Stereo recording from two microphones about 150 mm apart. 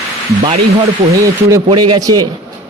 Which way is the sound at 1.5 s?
25° right (ahead or behind).